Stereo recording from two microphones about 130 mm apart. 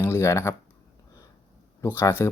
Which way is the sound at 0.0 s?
20° left (ahead or behind).